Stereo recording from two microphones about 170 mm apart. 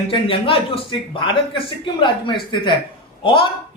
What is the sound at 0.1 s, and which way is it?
A man's voice, 30° left (ahead or behind).